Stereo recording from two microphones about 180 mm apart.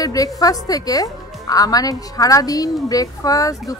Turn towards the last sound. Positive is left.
turn(degrees=20)  # may be behind; listen again after turning